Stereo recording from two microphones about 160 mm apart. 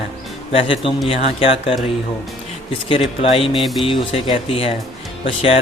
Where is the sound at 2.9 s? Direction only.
35° left (ahead or behind).